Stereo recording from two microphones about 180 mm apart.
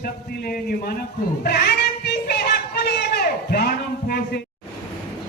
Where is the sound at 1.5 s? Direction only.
60° left (ahead or behind).